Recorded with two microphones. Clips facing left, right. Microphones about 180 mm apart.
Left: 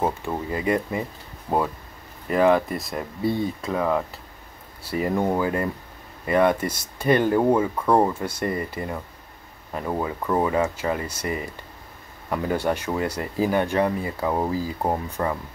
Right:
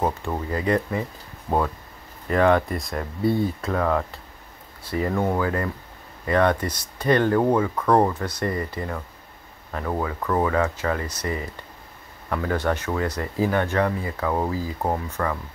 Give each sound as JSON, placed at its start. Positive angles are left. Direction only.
{"t": 0.0, "sound": "speech", "side_deg": 10}
{"t": 2.2, "sound": "speech", "side_deg": 5}
{"t": 8.3, "sound": "speech", "side_deg": 25}
{"t": 14.3, "sound": "speech", "side_deg": 5}
{"t": 15.2, "sound": "speech", "side_deg": 20}